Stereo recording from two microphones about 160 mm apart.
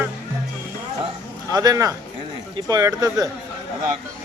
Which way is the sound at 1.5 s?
25° right (ahead or behind).